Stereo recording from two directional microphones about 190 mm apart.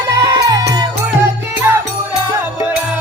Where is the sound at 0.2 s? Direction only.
20° right (ahead or behind).